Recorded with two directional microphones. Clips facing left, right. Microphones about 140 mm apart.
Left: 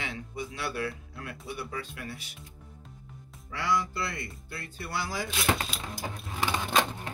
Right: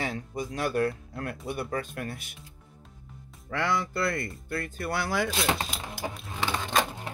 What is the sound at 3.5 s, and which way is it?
Speech, 60° right (ahead or behind).